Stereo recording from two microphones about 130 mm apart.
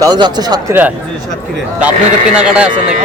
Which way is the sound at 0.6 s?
15° right (ahead or behind).